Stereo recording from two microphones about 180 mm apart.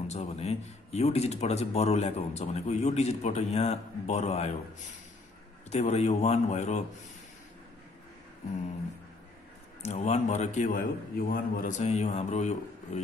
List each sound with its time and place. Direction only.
0.1 s speech: 35° left (ahead or behind)
5.7 s speech: 35° left (ahead or behind)
9.8 s speech: 35° left (ahead or behind)